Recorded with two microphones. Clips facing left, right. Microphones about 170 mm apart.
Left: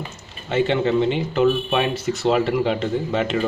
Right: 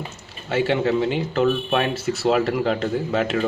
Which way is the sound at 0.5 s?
5° right (ahead or behind).